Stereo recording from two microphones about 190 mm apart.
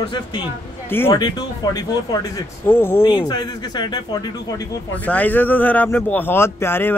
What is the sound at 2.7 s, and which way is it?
Speech, 10° left (ahead or behind).